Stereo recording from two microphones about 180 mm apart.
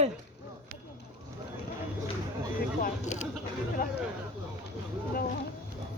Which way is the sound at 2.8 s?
40° left (ahead or behind).